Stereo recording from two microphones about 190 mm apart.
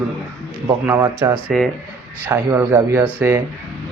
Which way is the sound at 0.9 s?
15° right (ahead or behind).